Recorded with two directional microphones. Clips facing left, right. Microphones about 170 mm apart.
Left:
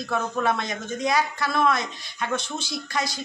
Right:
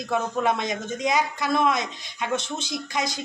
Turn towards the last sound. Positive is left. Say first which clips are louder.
# right 1 dB
turn(degrees=-20)  # may be behind; listen again after turning